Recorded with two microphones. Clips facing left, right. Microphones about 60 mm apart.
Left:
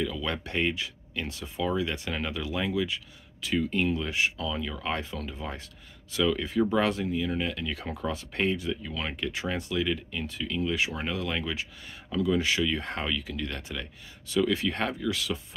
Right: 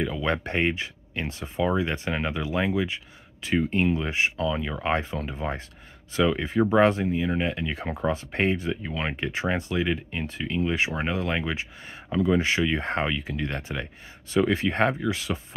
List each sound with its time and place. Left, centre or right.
0.0 s speech: right